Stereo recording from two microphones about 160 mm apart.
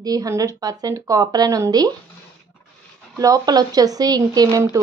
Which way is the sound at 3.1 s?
20° right (ahead or behind).